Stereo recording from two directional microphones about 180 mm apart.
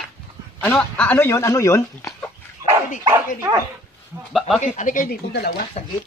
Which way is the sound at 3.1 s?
15° right (ahead or behind).